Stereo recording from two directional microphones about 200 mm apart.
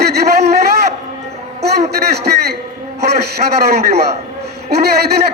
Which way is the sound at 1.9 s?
55° right (ahead or behind).